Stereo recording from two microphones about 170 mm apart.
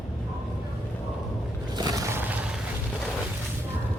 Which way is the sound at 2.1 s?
10° right (ahead or behind).